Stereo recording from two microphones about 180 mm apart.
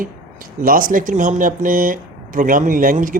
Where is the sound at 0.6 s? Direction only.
50° right (ahead or behind).